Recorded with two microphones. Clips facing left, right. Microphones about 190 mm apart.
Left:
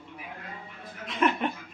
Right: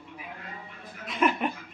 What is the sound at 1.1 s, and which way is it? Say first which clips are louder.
Chuckle: even; 5° right (ahead or behind).